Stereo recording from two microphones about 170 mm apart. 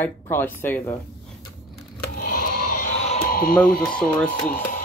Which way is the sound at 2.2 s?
55° left (ahead or behind).